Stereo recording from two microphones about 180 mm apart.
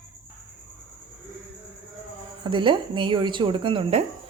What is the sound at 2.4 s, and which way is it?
Speech, 25° right (ahead or behind).